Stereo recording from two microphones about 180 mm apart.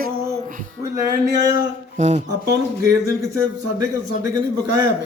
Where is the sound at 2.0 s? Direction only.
40° right (ahead or behind).